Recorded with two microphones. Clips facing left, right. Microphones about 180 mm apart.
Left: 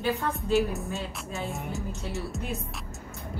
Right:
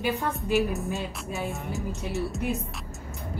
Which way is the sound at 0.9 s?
15° right (ahead or behind).